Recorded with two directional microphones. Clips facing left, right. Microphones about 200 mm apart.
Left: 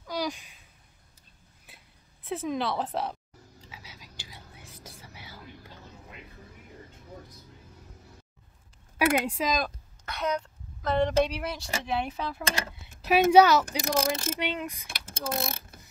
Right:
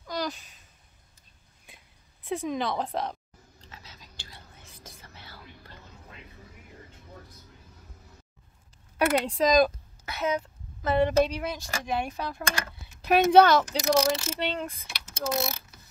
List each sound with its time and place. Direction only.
0.0 s a sound: 10° left (ahead or behind)
1.7 s a sound: 5° left (ahead or behind)
2.2 s a woman's voice: centre (ahead or behind)
3.6 s whispering: 10° left (ahead or behind)
8.9 s a woman's voice: 10° left (ahead or behind)
13.7 s speech: 50° left (ahead or behind)
14.4 s speech: 10° left (ahead or behind)
14.9 s mechanisms: 50° left (ahead or behind)